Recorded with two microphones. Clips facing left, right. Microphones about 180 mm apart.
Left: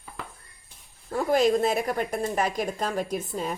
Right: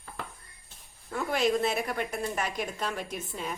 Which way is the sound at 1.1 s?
40° left (ahead or behind).